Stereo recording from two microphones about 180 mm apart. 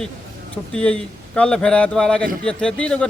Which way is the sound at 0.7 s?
5° left (ahead or behind).